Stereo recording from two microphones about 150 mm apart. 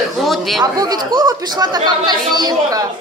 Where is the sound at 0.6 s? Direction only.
25° right (ahead or behind).